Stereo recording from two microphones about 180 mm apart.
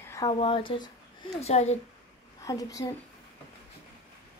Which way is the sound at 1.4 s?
35° left (ahead or behind).